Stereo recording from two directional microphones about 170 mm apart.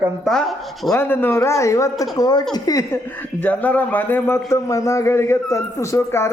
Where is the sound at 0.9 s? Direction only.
10° left (ahead or behind).